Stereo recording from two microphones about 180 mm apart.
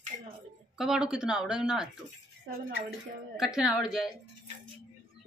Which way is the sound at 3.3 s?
5° right (ahead or behind).